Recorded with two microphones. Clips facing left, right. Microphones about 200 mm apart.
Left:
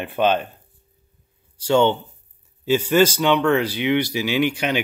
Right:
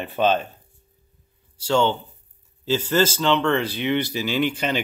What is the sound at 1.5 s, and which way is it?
Speech, 15° left (ahead or behind).